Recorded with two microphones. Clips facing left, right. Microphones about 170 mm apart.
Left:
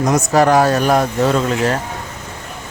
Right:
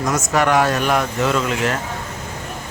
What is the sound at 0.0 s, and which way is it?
Speech, 35° left (ahead or behind).